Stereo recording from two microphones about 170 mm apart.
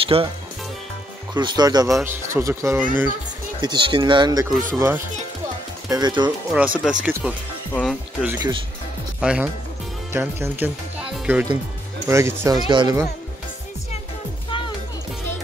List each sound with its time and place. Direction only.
0.0 s speech: 35° right (ahead or behind)
1.3 s speech: 25° right (ahead or behind)
3.6 s speech: 25° right (ahead or behind)
6.5 s speech: 5° right (ahead or behind)
7.7 s music: centre (ahead or behind)
9.2 s speech: 5° right (ahead or behind); by 13.1 s 20° right (ahead or behind)